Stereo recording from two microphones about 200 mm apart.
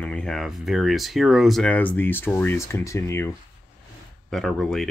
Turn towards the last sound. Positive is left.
turn(degrees=0)  # may be behind; listen again after turning